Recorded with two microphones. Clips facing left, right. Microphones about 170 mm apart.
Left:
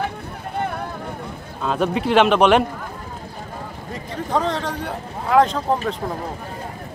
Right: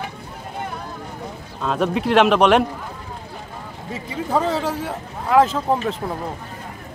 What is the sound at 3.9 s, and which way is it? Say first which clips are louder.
Speech: right 1 dB; 5° right (ahead or behind).